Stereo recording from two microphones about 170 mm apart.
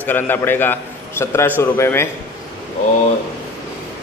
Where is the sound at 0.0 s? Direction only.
10° left (ahead or behind).